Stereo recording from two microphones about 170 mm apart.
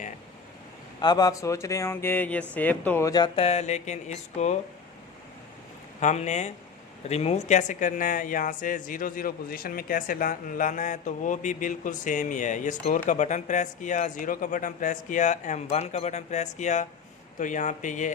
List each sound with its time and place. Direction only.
1.0 s speech: 25° left (ahead or behind); by 4.5 s 40° left (ahead or behind)
6.0 s speech: 45° left (ahead or behind)